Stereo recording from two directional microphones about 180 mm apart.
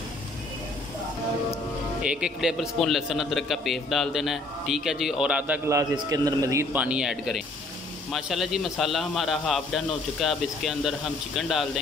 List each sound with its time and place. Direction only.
2.0 s a man's voice: 5° right (ahead or behind)
5.7 s a man's voice: 20° right (ahead or behind); by 11.8 s centre (ahead or behind)